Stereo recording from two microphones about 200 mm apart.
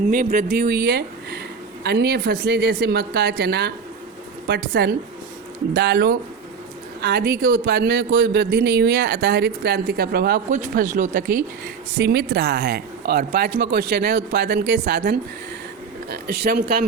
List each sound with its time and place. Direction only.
0.1 s a man's voice: 45° right (ahead or behind)
11.9 s a man's voice: 55° right (ahead or behind)